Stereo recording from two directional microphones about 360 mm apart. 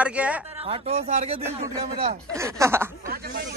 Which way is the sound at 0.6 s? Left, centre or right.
Centre.